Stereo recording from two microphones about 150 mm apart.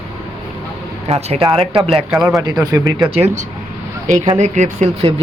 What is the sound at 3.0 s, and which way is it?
Speech, 45° right (ahead or behind).